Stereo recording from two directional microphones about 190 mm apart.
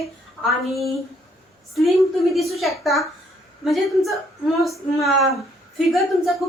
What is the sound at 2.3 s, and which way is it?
A woman's voice, centre (ahead or behind).